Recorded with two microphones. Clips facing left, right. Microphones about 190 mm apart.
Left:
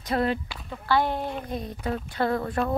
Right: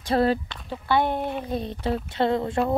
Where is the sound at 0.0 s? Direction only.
30° right (ahead or behind).